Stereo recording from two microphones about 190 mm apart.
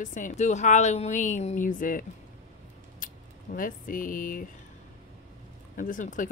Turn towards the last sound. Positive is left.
turn(degrees=40)  # may be behind; listen again after turning